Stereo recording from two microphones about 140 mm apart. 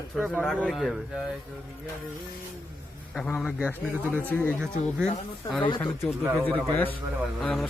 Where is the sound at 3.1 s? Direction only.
5° left (ahead or behind).